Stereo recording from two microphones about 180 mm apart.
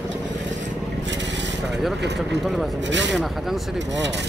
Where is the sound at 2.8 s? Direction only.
80° right.